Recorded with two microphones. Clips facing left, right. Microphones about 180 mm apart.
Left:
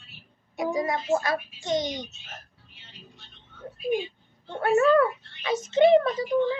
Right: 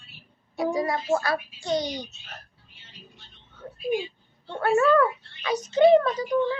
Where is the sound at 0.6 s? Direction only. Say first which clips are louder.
Right 1 dB; 20° left (ahead or behind).